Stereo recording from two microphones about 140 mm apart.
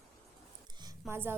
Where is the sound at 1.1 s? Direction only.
15° right (ahead or behind).